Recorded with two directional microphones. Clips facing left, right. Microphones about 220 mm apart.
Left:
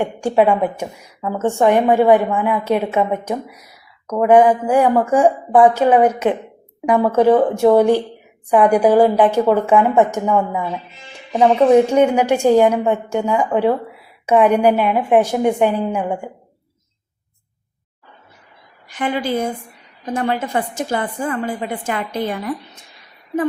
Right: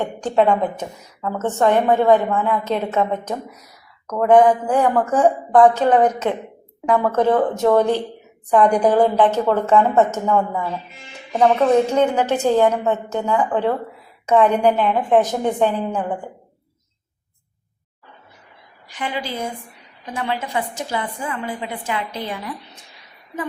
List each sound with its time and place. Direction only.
0.0 s a woman's voice: 10° left (ahead or behind)
18.9 s a woman's voice: 50° left (ahead or behind)